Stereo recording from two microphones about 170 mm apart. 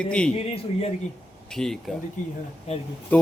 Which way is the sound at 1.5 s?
5° left (ahead or behind).